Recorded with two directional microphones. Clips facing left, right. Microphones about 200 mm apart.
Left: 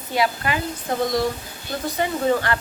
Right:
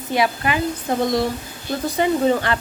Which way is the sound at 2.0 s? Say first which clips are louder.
Right 3 dB; 20° right (ahead or behind).